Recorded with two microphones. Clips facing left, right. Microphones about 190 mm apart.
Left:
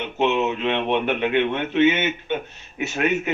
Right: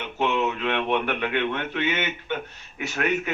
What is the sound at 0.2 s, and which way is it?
A man's voice, 25° left (ahead or behind).